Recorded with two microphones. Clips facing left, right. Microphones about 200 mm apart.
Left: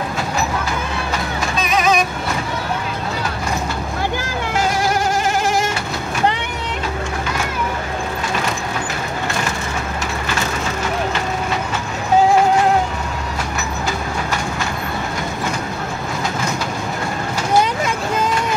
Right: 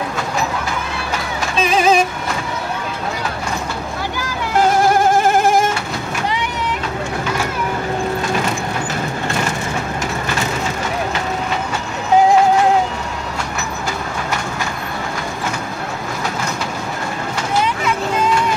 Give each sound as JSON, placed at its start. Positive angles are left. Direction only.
{"t": 1.6, "sound": "music", "side_deg": -30}
{"t": 4.6, "sound": "vehicle", "side_deg": -55}